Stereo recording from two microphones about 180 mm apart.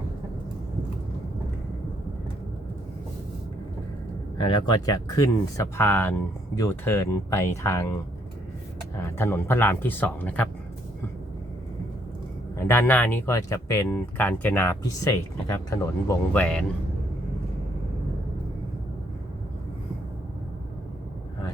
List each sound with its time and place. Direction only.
4.7 s speech: 20° left (ahead or behind)
9.0 s speech: 15° left (ahead or behind)
12.5 s speech: 15° left (ahead or behind)